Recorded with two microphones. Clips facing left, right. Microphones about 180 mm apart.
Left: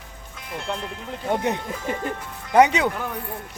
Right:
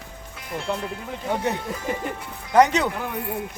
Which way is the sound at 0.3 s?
Centre (ahead or behind).